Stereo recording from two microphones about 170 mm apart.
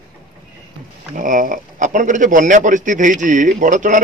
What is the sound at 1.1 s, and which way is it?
Speech, 50° right (ahead or behind).